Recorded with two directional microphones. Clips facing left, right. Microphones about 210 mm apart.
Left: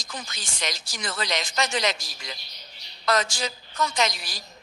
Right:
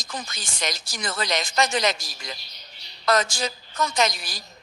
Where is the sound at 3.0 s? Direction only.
45° right (ahead or behind).